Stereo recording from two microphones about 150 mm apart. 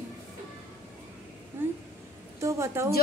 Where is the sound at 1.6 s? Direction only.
15° right (ahead or behind).